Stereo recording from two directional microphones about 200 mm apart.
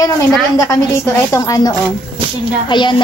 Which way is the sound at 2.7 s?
25° left (ahead or behind).